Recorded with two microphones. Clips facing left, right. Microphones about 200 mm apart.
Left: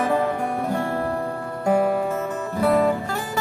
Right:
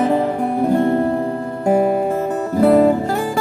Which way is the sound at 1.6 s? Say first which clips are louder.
Right 4 dB; 40° right (ahead or behind).